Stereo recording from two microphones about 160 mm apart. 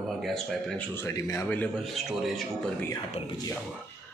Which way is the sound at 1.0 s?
20° left (ahead or behind).